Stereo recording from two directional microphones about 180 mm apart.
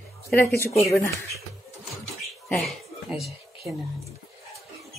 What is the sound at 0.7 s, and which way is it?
Speech, 35° left (ahead or behind).